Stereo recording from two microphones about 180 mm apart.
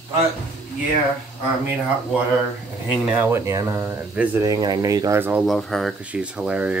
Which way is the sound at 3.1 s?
15° right (ahead or behind).